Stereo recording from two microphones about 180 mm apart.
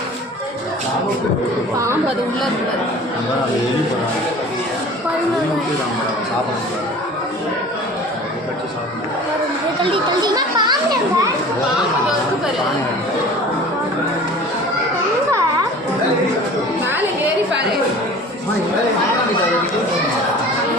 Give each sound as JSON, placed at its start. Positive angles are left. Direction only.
{"t": 9.8, "sound": "a child's voice", "side_deg": -25}